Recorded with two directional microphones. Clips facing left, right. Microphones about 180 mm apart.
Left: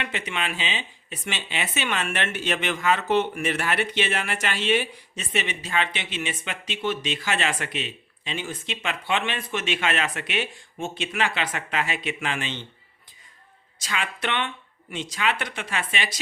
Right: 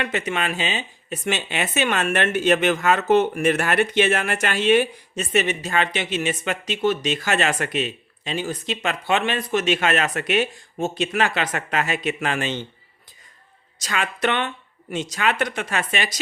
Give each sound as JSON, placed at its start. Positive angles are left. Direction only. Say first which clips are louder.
{"t": 0.0, "sound": "speech", "louder": "right 6 dB", "side_deg": -45}
{"t": 13.7, "sound": "speech", "louder": "right 4 dB", "side_deg": -45}